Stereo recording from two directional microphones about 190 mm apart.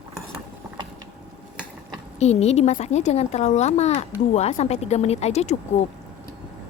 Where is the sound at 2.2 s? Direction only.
35° left (ahead or behind).